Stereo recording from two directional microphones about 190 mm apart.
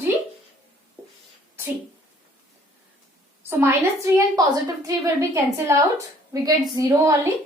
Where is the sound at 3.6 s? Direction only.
15° right (ahead or behind).